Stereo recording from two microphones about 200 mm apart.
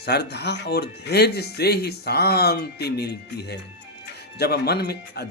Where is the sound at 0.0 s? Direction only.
55° left (ahead or behind).